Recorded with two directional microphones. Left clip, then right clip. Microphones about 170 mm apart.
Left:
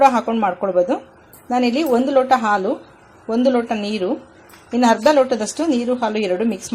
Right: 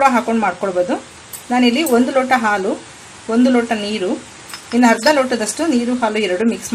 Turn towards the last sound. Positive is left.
turn(degrees=25)  # may be behind; listen again after turning